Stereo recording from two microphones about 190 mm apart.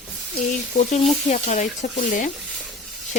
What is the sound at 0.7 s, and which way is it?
Speech, 35° left (ahead or behind).